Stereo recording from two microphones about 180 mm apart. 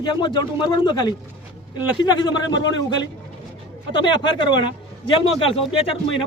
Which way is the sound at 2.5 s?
90° left.